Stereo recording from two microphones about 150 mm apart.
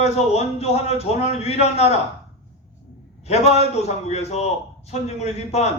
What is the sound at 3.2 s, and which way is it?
A man's voice, 45° left (ahead or behind).